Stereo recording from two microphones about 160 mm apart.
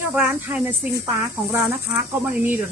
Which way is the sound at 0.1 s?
10° right (ahead or behind).